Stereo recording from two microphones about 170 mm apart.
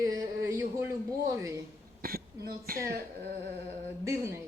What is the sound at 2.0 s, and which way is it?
Speech, 60° right (ahead or behind).